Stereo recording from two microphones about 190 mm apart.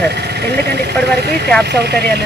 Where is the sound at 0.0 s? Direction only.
60° right (ahead or behind).